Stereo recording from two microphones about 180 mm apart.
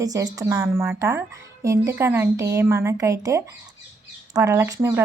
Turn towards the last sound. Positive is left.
turn(degrees=-15)  # may be behind; listen again after turning